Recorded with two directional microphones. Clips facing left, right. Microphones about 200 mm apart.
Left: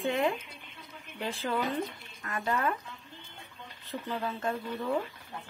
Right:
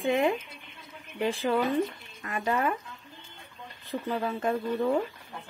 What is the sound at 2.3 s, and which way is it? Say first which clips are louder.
Speech: right 3 dB; 15° right (ahead or behind).